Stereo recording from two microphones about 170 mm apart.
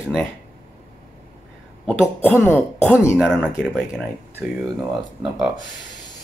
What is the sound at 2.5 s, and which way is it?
Speech, 10° left (ahead or behind).